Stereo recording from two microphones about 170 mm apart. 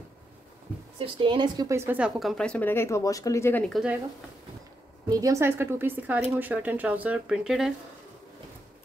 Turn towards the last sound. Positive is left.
turn(degrees=-5)  # may be behind; listen again after turning